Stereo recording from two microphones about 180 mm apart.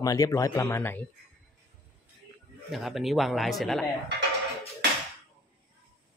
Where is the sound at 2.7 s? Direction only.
Centre (ahead or behind).